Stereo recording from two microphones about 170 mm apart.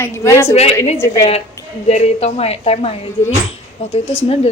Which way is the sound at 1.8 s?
40° left (ahead or behind).